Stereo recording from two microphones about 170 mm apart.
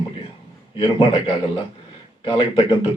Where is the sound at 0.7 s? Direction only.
30° left (ahead or behind).